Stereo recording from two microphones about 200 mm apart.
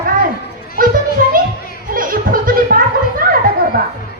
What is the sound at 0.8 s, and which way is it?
Speech, 45° right (ahead or behind).